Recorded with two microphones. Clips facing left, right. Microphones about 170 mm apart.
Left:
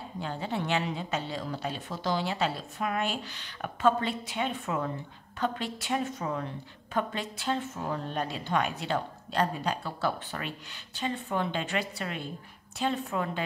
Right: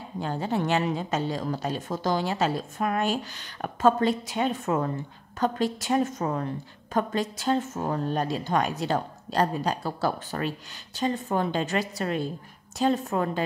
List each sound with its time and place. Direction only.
0.2 s a woman's voice: 45° right (ahead or behind)